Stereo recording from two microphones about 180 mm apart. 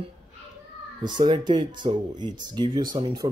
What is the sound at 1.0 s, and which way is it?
Speech, 25° right (ahead or behind).